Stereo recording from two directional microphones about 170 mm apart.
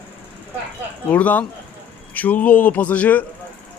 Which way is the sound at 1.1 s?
10° left (ahead or behind).